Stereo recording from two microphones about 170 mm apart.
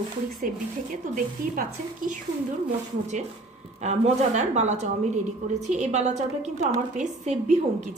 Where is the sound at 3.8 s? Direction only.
40° right (ahead or behind).